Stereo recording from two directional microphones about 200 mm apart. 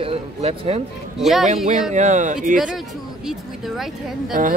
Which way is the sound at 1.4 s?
35° right (ahead or behind).